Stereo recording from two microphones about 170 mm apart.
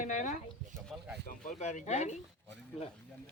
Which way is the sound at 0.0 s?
50° left (ahead or behind).